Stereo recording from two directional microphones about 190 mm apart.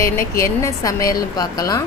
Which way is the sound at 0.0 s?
15° left (ahead or behind).